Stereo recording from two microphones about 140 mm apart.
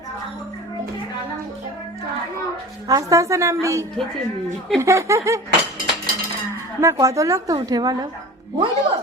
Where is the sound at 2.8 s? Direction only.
25° right (ahead or behind).